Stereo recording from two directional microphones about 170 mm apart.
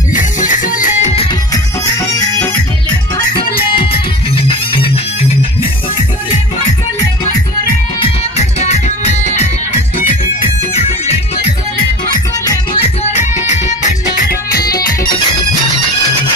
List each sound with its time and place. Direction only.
0.1 s music: 50° left (ahead or behind)
3.2 s music: 30° left (ahead or behind)
8.0 s music: 40° left (ahead or behind)
12.7 s music: 45° left (ahead or behind)
14.5 s music: 65° left (ahead or behind)